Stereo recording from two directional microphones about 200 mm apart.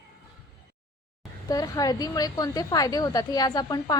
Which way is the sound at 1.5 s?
20° left (ahead or behind).